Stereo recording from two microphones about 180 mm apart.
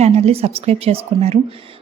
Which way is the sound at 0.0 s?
35° right (ahead or behind).